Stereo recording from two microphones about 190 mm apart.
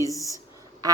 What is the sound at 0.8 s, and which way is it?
Duck, 20° right (ahead or behind).